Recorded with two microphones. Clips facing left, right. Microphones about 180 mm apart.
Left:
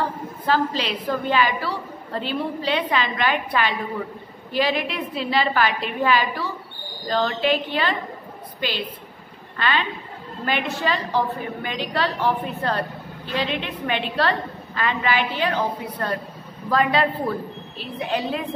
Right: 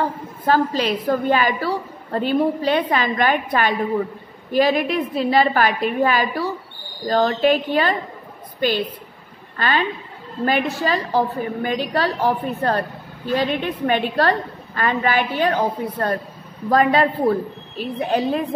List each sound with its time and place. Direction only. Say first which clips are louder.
0.5 s a woman's voice: right 4 dB; 45° right (ahead or behind)